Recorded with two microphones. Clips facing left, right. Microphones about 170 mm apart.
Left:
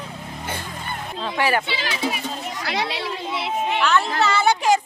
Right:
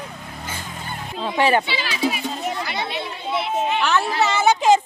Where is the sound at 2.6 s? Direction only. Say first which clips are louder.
Left 2 dB; 90° left.